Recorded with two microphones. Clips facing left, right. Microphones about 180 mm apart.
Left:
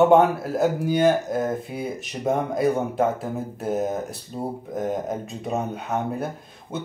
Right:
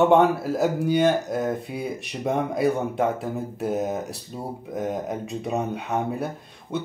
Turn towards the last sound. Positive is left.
turn(degrees=0)  # may be behind; listen again after turning